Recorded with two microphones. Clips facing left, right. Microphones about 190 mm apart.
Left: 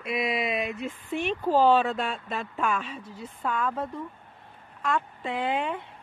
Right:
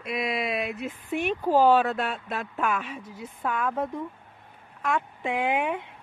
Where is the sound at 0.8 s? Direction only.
10° right (ahead or behind).